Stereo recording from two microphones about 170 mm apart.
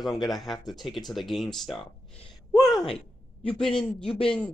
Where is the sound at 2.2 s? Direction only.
25° left (ahead or behind).